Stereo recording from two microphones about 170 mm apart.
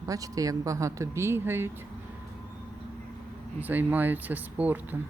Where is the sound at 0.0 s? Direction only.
20° right (ahead or behind).